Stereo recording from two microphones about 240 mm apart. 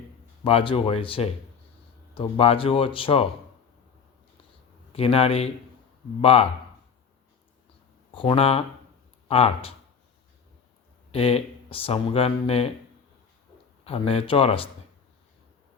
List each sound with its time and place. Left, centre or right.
0.4 s speech: left
4.9 s speech: left
8.1 s speech: left
11.1 s speech: left
13.8 s speech: left